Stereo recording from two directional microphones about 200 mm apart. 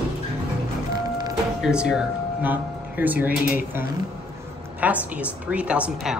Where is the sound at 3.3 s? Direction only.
45° left (ahead or behind).